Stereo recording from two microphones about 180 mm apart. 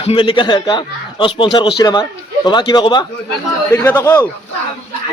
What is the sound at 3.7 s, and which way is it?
Speech, 10° left (ahead or behind).